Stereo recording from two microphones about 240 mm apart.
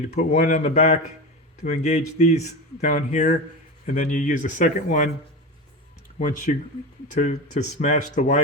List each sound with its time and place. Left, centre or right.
0.3 s speech: left
6.5 s speech: left